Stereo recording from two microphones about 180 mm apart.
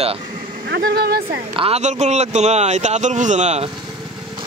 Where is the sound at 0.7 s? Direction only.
65° right (ahead or behind).